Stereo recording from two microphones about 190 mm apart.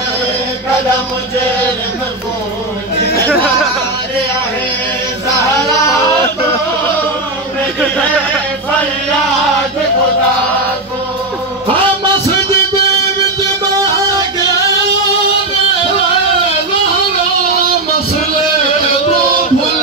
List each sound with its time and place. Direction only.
5.9 s yodeling: 15° left (ahead or behind)
12.4 s music: 15° left (ahead or behind)